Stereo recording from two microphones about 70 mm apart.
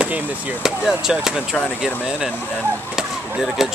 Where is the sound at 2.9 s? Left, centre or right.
Centre.